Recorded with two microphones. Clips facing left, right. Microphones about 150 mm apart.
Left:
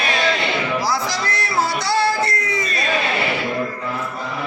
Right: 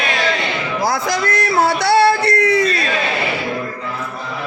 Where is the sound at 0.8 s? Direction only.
50° right (ahead or behind); by 2.8 s 65° right (ahead or behind).